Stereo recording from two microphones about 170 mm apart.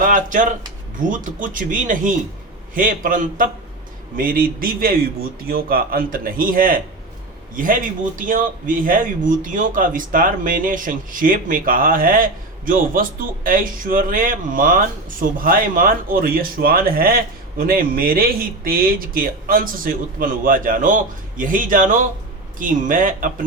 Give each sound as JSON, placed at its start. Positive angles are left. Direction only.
{"t": 0.0, "sound": "a man's voice", "side_deg": -50}